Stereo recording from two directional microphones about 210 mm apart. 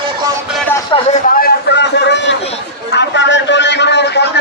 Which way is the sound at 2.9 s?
55° left (ahead or behind).